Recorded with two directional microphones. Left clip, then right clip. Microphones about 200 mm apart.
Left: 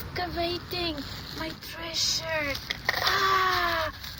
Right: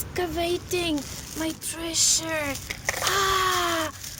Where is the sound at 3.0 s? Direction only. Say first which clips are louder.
Right 1 dB; 50° right (ahead or behind).